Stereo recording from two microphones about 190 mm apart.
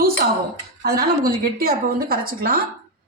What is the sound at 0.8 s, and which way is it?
A woman's voice, 55° right (ahead or behind).